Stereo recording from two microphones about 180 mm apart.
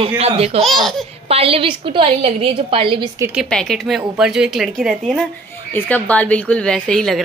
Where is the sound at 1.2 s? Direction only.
35° right (ahead or behind).